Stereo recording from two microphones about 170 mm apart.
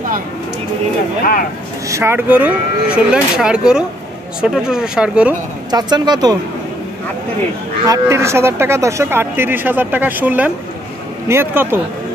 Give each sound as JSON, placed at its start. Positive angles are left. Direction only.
{"t": 1.9, "sound": "speech", "side_deg": -15}
{"t": 5.7, "sound": "speech", "side_deg": -25}
{"t": 7.8, "sound": "speech", "side_deg": -20}